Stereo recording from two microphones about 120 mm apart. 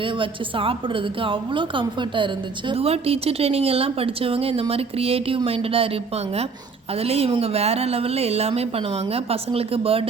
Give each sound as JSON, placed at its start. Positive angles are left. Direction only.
{"t": 0.0, "sound": "a woman's voice", "side_deg": -45}